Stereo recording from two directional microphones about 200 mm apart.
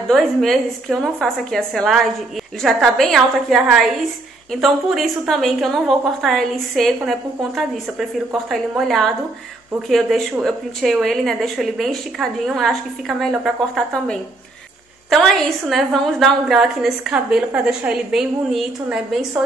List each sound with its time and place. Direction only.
0.1 s a woman's voice: centre (ahead or behind)